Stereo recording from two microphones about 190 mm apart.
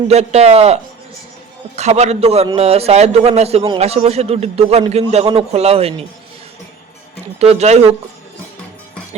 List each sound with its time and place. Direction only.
0.1 s a man's voice: 35° right (ahead or behind)
7.3 s a man's voice: 35° right (ahead or behind)